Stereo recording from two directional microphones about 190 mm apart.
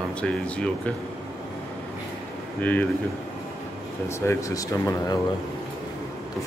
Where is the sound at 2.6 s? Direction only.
10° left (ahead or behind).